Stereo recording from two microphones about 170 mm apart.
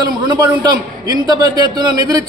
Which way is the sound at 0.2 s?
25° right (ahead or behind).